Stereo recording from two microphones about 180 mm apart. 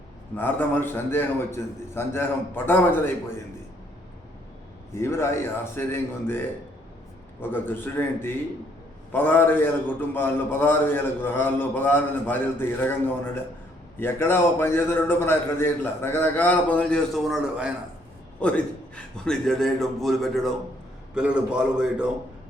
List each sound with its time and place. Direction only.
0.3 s a man's voice: 10° left (ahead or behind)
4.9 s a man's voice: 15° left (ahead or behind)
7.5 s a man's voice: 10° left (ahead or behind); by 17.7 s 5° right (ahead or behind)
18.3 s a man's voice: 5° left (ahead or behind)